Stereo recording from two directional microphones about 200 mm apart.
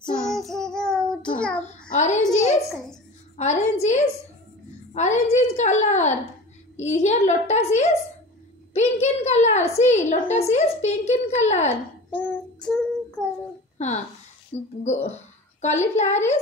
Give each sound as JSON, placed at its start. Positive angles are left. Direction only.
{"t": 0.1, "sound": "child singing", "side_deg": 0}
{"t": 1.9, "sound": "a woman's voice", "side_deg": 35}
{"t": 3.3, "sound": "a woman's voice", "side_deg": 35}
{"t": 12.1, "sound": "child singing", "side_deg": 10}
{"t": 13.7, "sound": "a woman's voice", "side_deg": 35}